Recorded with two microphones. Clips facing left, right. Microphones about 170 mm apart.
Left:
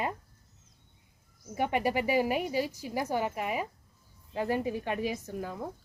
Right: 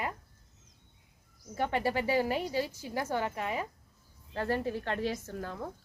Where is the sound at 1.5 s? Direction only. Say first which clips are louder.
Left 2 dB; 15° left (ahead or behind).